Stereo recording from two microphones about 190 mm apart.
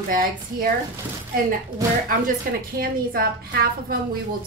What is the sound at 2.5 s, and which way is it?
A woman's voice, 50° right (ahead or behind).